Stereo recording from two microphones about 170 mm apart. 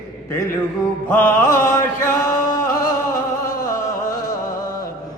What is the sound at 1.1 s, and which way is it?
Mantra, 15° left (ahead or behind).